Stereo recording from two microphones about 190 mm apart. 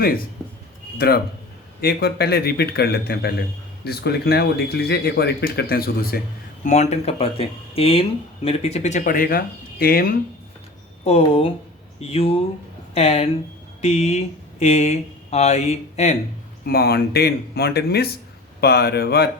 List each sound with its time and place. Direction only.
0.9 s speech: 55° left (ahead or behind)
6.7 s speech: 35° left (ahead or behind)
11.0 s speech: 30° left (ahead or behind)
16.6 s speech: 55° left (ahead or behind)